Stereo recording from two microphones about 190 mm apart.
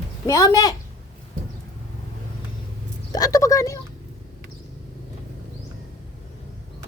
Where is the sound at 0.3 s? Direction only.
15° left (ahead or behind).